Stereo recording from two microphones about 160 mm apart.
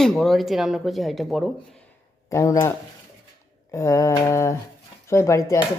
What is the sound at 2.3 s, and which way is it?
Speech, 20° left (ahead or behind).